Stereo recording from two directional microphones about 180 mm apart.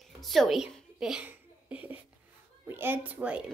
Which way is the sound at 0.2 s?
Centre (ahead or behind).